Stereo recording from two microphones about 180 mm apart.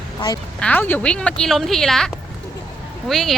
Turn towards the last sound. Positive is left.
turn(degrees=0)  # may be behind; listen again after turning